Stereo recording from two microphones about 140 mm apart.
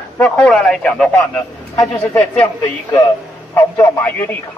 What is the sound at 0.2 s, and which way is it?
Speech, 5° left (ahead or behind).